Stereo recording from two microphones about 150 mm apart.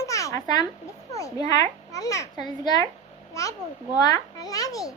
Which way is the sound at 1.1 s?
20° left (ahead or behind).